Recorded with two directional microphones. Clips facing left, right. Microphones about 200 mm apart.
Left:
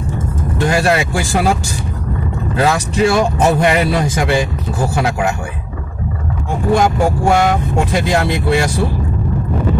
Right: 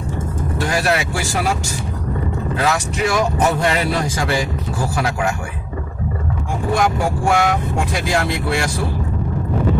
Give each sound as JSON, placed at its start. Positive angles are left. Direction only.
{"t": 0.7, "sound": "speech", "side_deg": 25}
{"t": 2.6, "sound": "speech", "side_deg": 30}
{"t": 3.6, "sound": "speech", "side_deg": 20}
{"t": 6.7, "sound": "speech", "side_deg": 25}